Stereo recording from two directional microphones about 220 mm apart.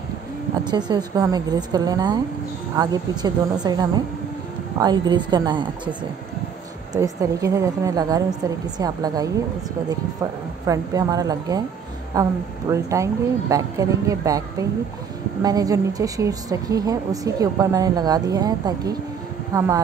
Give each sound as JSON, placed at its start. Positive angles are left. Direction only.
{"t": 0.7, "sound": "a woman's voice", "side_deg": -20}
{"t": 7.0, "sound": "a woman's voice", "side_deg": -15}
{"t": 10.7, "sound": "a woman's voice", "side_deg": -15}